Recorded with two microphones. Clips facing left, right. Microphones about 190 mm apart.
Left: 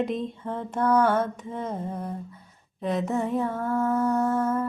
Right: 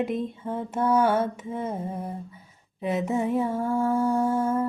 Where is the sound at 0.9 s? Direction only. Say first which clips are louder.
Even; 5° right (ahead or behind).